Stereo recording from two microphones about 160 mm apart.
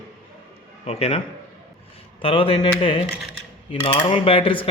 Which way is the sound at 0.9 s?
40° left (ahead or behind).